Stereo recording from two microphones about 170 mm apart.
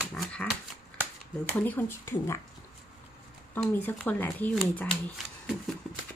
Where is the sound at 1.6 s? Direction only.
10° left (ahead or behind).